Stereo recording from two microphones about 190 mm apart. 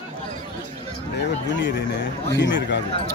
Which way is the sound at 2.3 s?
70° left (ahead or behind).